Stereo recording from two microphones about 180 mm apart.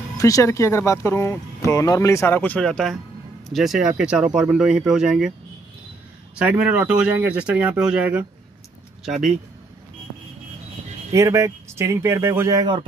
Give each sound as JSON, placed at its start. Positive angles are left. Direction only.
{"t": 0.2, "sound": "speech", "side_deg": 15}
{"t": 6.3, "sound": "speech", "side_deg": -5}
{"t": 11.1, "sound": "speech", "side_deg": -15}